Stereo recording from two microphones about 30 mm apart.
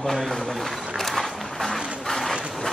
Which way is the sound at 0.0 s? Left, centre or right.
Centre.